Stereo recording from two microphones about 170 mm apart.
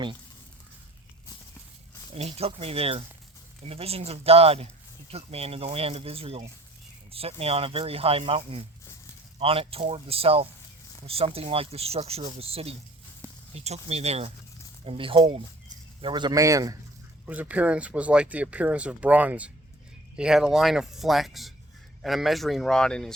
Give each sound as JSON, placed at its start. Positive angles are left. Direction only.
{"t": 2.1, "sound": "speech", "side_deg": -35}
{"t": 17.2, "sound": "speech", "side_deg": -10}